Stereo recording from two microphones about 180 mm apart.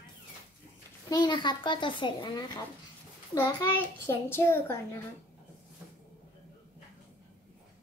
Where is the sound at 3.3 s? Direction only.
15° left (ahead or behind).